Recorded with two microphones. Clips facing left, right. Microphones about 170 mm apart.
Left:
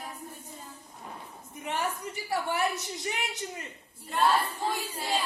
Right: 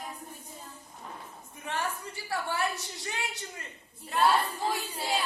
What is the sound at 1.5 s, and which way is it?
A woman's voice, 15° left (ahead or behind).